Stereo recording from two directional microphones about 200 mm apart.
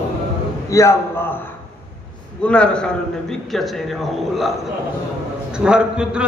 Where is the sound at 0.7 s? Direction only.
15° left (ahead or behind).